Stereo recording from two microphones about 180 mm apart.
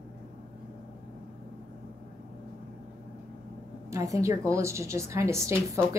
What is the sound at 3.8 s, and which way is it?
A woman's voice, 15° right (ahead or behind).